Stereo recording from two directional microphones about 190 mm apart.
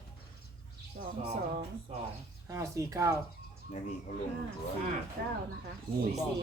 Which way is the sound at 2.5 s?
15° right (ahead or behind).